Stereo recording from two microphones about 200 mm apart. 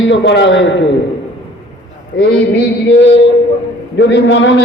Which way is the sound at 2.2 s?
55° left (ahead or behind).